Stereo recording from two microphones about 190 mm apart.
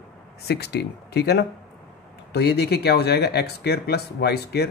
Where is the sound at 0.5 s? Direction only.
60° left (ahead or behind).